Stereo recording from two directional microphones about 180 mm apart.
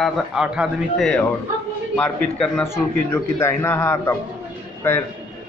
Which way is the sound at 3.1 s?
15° left (ahead or behind).